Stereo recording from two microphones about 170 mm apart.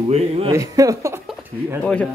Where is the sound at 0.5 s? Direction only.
20° right (ahead or behind).